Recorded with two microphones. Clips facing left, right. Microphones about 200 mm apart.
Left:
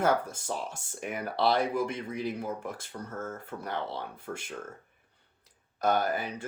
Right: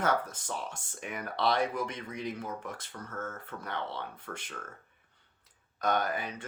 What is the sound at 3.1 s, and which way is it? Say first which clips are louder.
Speech: left 1 dB; 30° left (ahead or behind).